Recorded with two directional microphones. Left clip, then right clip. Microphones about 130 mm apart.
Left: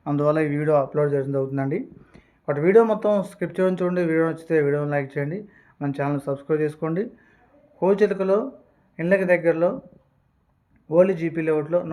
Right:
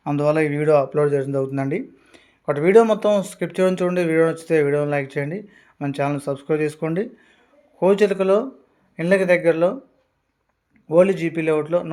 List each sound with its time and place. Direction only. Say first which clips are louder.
0.2 s speech: right 2 dB; 30° right (ahead or behind)
10.8 s speech: right 2 dB; 40° right (ahead or behind)